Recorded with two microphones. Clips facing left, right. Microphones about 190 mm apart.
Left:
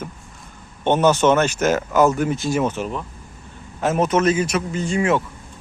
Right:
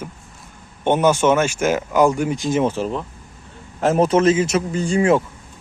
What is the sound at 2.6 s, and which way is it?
A man's voice, 30° right (ahead or behind).